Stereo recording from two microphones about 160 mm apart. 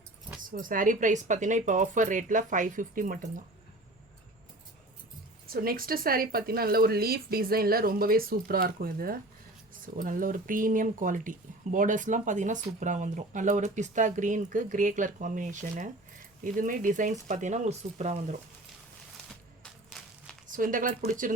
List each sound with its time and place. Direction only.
0.5 s speech: 60° right (ahead or behind)
5.5 s speech: 70° right (ahead or behind); by 18.3 s 45° right (ahead or behind)
19.9 s walk: centre (ahead or behind)
20.5 s speech: 55° right (ahead or behind)